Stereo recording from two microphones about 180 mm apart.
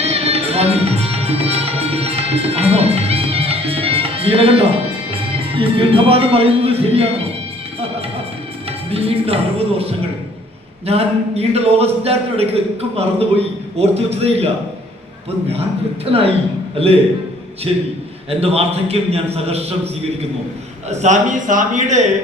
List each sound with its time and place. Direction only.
0.0 s music: 35° right (ahead or behind)
5.1 s speech: 30° right (ahead or behind)
8.9 s a man's voice: 35° right (ahead or behind)
16.7 s a man's voice: 30° right (ahead or behind)
18.3 s a man's voice: 35° right (ahead or behind)
20.9 s a man's voice: 40° right (ahead or behind)